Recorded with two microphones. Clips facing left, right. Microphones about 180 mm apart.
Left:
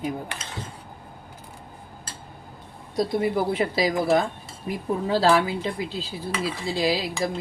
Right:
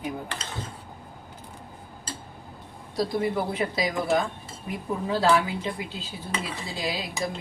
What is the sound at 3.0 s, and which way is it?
A woman's voice, 25° left (ahead or behind).